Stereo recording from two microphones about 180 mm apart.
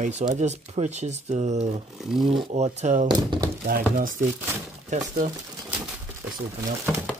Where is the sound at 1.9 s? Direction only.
Centre (ahead or behind).